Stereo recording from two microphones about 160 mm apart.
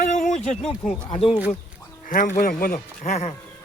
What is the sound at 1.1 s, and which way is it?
Speech, 35° left (ahead or behind).